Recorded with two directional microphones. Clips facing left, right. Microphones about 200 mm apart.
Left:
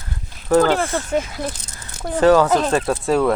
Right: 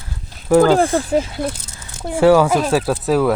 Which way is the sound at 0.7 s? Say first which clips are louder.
Right 5 dB; 35° right (ahead or behind).